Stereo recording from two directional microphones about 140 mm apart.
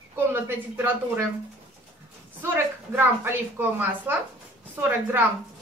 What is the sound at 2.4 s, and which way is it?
A woman's voice, 15° right (ahead or behind).